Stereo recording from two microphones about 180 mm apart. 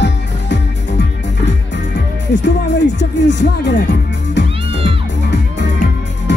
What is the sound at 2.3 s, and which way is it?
Music, 75° left (ahead or behind).